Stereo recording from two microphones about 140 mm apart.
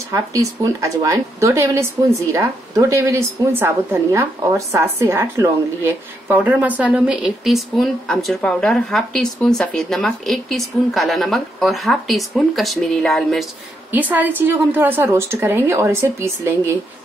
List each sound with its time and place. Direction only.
0.1 s a woman's voice: 25° right (ahead or behind); by 13.5 s centre (ahead or behind)
13.9 s a woman's voice: 10° right (ahead or behind)